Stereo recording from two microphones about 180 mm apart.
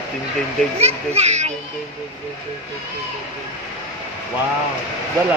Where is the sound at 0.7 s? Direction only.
35° right (ahead or behind).